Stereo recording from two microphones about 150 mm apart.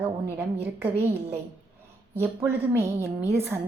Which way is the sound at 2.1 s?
15° right (ahead or behind).